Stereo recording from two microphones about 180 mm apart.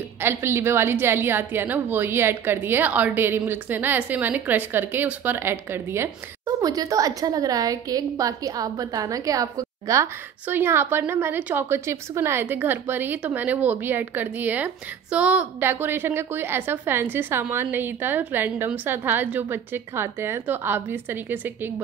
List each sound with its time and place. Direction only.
0.2 s a woman's voice: 15° right (ahead or behind)